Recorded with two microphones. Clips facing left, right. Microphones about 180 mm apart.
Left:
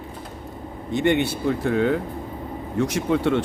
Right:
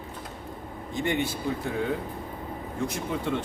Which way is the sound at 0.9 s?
70° left (ahead or behind).